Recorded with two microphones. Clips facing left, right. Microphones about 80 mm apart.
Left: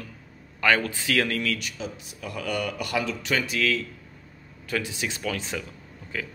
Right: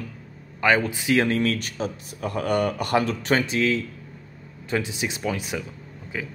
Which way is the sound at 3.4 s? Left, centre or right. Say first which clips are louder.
Right 3 dB; right.